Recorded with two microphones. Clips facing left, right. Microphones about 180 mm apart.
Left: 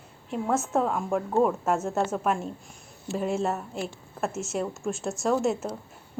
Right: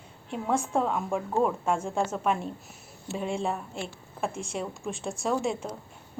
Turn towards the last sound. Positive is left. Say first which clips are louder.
# left 3 dB
turn(degrees=5)  # may be behind; listen again after turning